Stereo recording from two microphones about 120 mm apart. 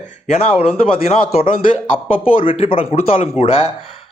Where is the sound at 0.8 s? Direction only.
50° left (ahead or behind).